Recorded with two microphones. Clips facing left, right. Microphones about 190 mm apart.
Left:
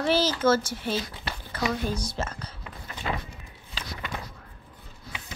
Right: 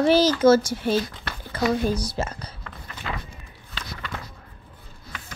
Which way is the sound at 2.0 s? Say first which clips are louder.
Right 4 dB; 10° right (ahead or behind).